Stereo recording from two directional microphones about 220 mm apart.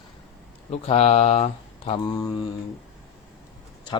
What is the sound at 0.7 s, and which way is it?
Speech, 30° left (ahead or behind).